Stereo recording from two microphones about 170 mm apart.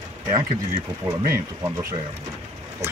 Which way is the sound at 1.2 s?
15° right (ahead or behind).